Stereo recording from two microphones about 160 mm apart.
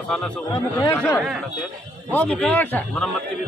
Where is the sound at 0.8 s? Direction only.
15° left (ahead or behind).